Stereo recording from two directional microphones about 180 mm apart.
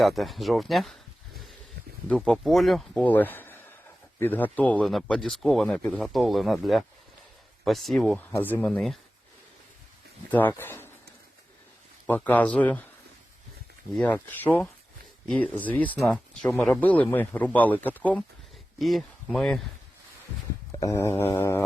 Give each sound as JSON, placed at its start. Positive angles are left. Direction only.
{"t": 0.0, "sound": "speech", "side_deg": 0}
{"t": 2.0, "sound": "speech", "side_deg": 0}
{"t": 10.3, "sound": "speech", "side_deg": 10}
{"t": 12.0, "sound": "speech", "side_deg": 10}
{"t": 13.9, "sound": "speech", "side_deg": 5}
{"t": 20.7, "sound": "speech", "side_deg": 15}